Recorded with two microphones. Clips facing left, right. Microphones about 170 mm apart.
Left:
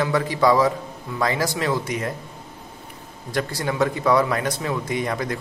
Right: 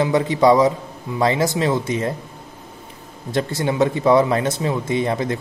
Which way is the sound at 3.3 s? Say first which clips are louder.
Right 4 dB; 25° right (ahead or behind).